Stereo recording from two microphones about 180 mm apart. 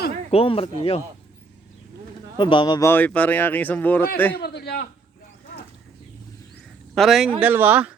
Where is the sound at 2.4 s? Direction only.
25° left (ahead or behind).